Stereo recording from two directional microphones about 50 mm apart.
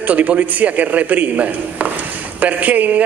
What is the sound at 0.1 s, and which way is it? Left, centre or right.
A man's voice, right.